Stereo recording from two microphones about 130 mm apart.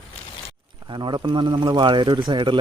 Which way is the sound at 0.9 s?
35° right (ahead or behind).